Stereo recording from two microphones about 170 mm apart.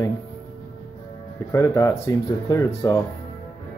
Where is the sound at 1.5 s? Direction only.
20° left (ahead or behind).